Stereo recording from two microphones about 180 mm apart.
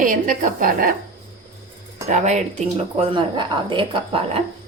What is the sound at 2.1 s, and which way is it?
Speech, 40° right (ahead or behind).